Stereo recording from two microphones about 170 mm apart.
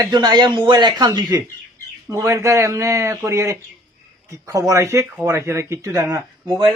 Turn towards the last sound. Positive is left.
turn(degrees=-20)  # may be behind; listen again after turning